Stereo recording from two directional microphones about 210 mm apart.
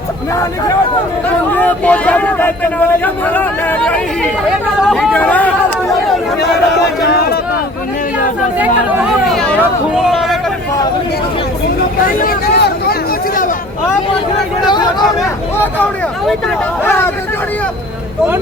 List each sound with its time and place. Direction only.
1.5 s speech: 5° left (ahead or behind)
6.4 s speech: 50° left (ahead or behind)
9.3 s speech: centre (ahead or behind)
12.0 s a sound: 45° left (ahead or behind)
15.5 s speech: 10° left (ahead or behind)